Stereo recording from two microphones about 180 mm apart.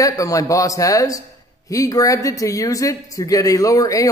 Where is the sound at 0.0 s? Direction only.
20° left (ahead or behind).